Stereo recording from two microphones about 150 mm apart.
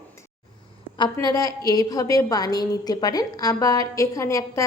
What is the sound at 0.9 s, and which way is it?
A woman's voice, 25° left (ahead or behind).